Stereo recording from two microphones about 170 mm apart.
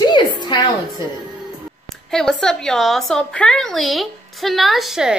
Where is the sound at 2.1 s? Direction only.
Centre (ahead or behind).